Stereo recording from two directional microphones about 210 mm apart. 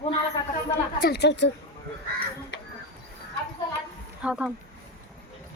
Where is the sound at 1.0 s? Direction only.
50° left (ahead or behind).